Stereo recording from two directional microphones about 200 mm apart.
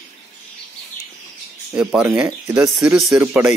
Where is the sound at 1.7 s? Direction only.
5° right (ahead or behind).